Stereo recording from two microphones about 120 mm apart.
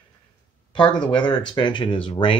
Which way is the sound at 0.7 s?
40° left (ahead or behind).